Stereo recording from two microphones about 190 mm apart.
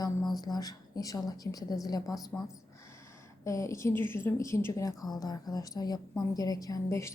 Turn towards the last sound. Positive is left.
turn(degrees=15)  # may be behind; listen again after turning